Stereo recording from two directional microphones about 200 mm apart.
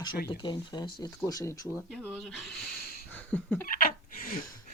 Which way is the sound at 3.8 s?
45° left (ahead or behind).